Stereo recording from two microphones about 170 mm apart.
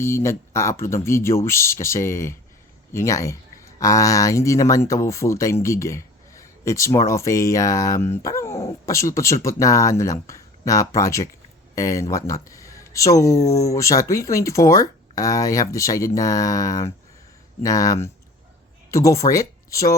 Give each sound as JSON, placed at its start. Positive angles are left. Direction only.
{"t": 0.0, "sound": "speech", "side_deg": 15}